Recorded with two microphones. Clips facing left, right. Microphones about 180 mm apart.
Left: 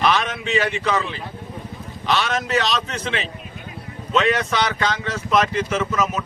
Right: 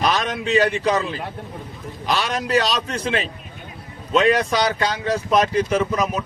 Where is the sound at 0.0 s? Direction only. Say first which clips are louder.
Left 1 dB; 40° right (ahead or behind).